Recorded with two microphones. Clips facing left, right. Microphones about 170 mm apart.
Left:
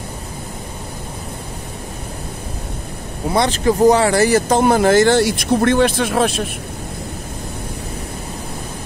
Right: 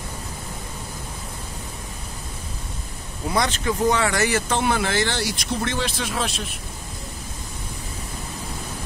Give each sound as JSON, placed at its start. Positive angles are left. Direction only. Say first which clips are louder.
{"t": 3.3, "sound": "speech", "louder": "left 7 dB", "side_deg": 30}